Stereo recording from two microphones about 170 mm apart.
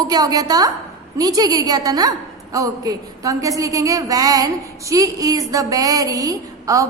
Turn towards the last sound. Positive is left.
turn(degrees=-20)  # may be behind; listen again after turning